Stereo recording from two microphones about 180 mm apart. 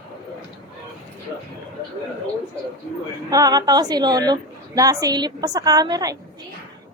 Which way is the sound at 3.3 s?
20° right (ahead or behind).